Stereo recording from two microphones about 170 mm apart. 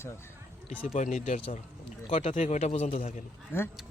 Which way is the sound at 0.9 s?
45° left (ahead or behind).